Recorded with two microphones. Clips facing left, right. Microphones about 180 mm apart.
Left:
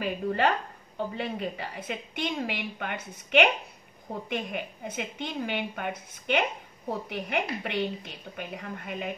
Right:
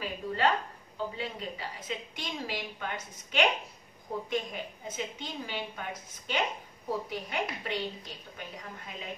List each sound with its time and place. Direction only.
0.0 s a woman's voice: 60° left (ahead or behind)